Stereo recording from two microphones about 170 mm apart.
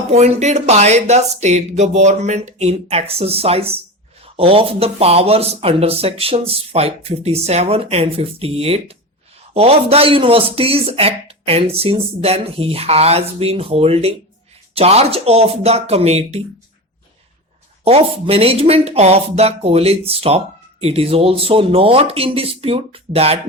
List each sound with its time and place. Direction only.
0.1 s speech: 40° right (ahead or behind)
17.8 s speech: 35° right (ahead or behind)